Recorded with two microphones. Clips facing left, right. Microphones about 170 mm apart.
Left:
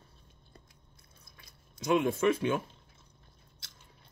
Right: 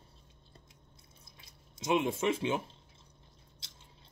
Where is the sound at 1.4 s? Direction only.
25° right (ahead or behind).